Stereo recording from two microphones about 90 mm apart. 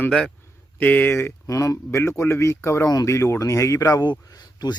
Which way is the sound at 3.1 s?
30° left (ahead or behind).